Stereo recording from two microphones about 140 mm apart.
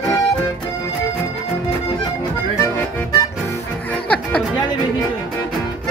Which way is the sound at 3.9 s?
10° left (ahead or behind).